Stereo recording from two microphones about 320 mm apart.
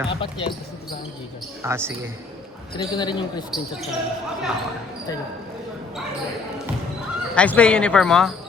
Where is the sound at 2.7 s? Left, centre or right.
Centre.